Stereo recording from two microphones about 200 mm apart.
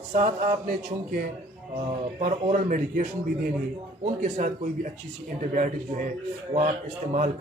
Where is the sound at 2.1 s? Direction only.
35° right (ahead or behind).